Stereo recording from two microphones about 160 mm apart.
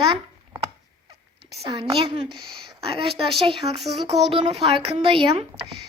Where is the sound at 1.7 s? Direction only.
35° right (ahead or behind).